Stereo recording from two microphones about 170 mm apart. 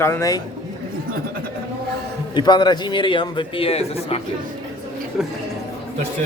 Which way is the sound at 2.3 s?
25° left (ahead or behind).